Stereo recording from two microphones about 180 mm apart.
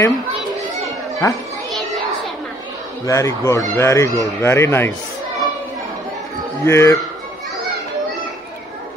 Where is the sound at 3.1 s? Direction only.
15° left (ahead or behind).